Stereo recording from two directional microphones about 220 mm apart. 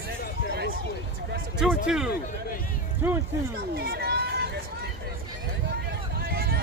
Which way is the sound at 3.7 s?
45° right (ahead or behind).